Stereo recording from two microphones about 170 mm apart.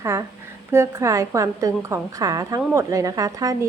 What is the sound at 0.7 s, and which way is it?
A woman's voice, 15° right (ahead or behind).